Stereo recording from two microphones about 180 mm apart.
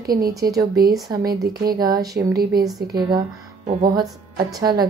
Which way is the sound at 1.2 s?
60° right (ahead or behind).